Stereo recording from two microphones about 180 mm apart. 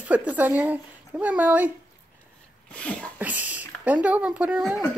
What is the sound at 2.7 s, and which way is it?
Sneeze, 5° left (ahead or behind).